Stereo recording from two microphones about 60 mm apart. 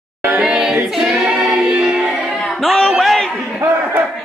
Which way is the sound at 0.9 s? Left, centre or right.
Centre.